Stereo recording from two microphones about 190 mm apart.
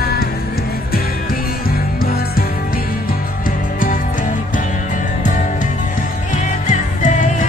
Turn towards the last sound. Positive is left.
turn(degrees=40)  # may be behind; listen again after turning